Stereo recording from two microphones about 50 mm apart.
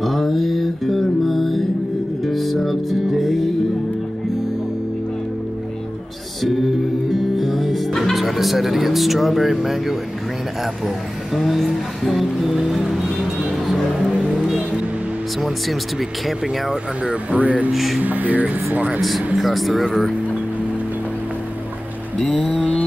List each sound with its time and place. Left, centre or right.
0.0 s music: centre
6.4 s music: centre
11.3 s speech: centre
14.1 s vehicle: centre
15.4 s speech: centre
17.0 s speech: right
17.6 s speech: centre
18.0 s speech: right
18.9 s speech: centre
22.4 s mantra: left